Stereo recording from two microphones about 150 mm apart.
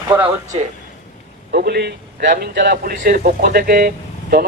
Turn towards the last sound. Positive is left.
turn(degrees=-75)  # may be behind; listen again after turning